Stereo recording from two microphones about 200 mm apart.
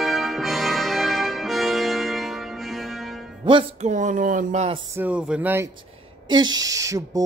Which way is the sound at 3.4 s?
25° right (ahead or behind).